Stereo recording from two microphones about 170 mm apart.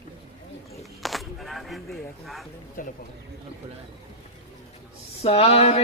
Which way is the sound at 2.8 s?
55° left (ahead or behind).